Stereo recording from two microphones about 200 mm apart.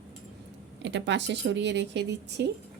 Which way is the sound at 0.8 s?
60° right (ahead or behind).